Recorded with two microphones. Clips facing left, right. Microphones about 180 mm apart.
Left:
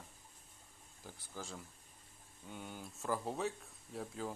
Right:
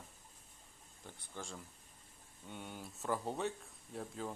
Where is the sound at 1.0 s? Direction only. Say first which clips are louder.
Even; 5° left (ahead or behind).